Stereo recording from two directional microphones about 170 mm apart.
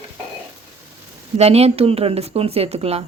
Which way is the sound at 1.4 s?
35° right (ahead or behind).